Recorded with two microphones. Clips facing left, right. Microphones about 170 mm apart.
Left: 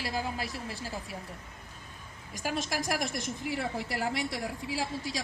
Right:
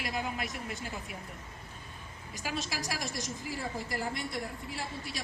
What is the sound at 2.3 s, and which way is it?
A woman's voice, 50° left (ahead or behind).